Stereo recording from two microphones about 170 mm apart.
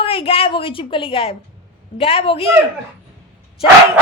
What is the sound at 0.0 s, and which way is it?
A woman's voice, 35° left (ahead or behind).